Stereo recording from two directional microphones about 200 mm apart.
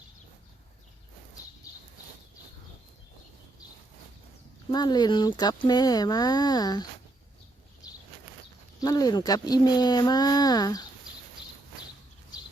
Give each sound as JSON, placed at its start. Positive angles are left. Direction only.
{"t": 4.7, "sound": "speech", "side_deg": 20}
{"t": 7.8, "sound": "a sound", "side_deg": 20}
{"t": 8.8, "sound": "speech", "side_deg": 20}